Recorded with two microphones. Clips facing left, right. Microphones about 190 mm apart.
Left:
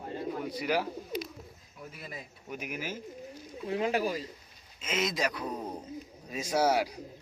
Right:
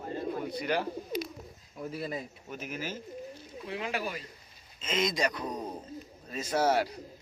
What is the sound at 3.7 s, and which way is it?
Speech, 40° left (ahead or behind).